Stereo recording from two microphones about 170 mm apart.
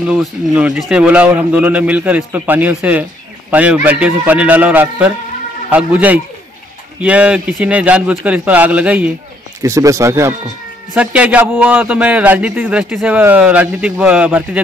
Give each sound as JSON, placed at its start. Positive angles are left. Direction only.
{"t": 0.0, "sound": "speech", "side_deg": -5}
{"t": 9.6, "sound": "speech", "side_deg": -20}